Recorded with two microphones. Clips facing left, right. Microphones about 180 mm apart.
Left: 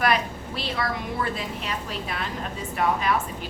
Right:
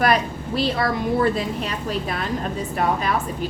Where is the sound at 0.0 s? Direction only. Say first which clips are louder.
Right 4 dB; 40° right (ahead or behind).